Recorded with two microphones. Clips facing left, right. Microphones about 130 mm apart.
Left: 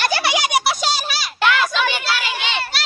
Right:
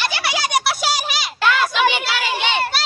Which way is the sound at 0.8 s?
15° right (ahead or behind).